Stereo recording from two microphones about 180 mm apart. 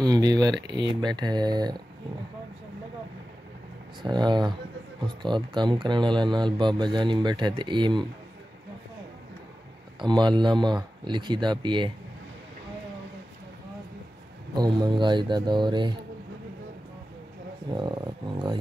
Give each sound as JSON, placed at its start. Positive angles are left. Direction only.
{"t": 0.0, "sound": "speech", "side_deg": -20}
{"t": 4.0, "sound": "speech", "side_deg": -25}
{"t": 9.9, "sound": "speech", "side_deg": -25}
{"t": 14.5, "sound": "speech", "side_deg": -25}
{"t": 17.6, "sound": "speech", "side_deg": -25}